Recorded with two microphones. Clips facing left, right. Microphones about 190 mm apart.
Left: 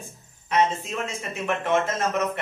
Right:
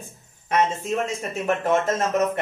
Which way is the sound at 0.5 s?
40° right (ahead or behind).